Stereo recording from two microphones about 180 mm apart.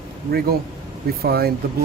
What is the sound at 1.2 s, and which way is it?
Speech, 60° right (ahead or behind).